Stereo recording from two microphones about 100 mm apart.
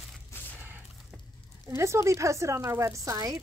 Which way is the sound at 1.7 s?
30° right (ahead or behind).